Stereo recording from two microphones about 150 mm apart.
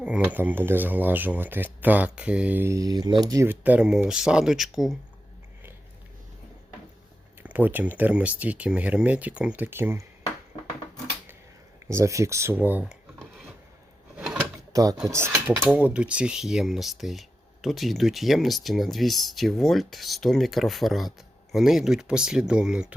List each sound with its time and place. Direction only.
0.0 s speech: 10° right (ahead or behind)
7.4 s speech: 10° right (ahead or behind)
11.9 s speech: 20° right (ahead or behind)
12.8 s a sound: centre (ahead or behind)
14.7 s speech: 25° right (ahead or behind); by 23.0 s 5° right (ahead or behind)